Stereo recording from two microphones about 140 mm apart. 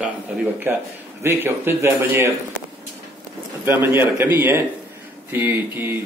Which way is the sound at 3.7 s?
15° right (ahead or behind).